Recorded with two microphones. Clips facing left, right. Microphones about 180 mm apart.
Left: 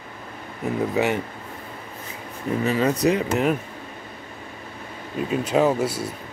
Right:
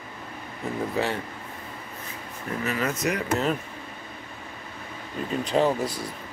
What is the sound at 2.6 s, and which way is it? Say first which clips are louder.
Speech: left 7 dB; 30° left (ahead or behind).